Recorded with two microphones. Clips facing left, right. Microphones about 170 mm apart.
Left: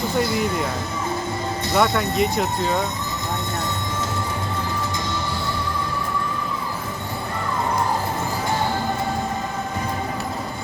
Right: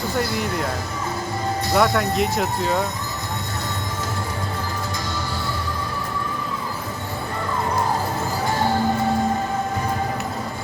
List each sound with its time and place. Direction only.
0.2 s speech: centre (ahead or behind)
1.7 s speech: centre (ahead or behind)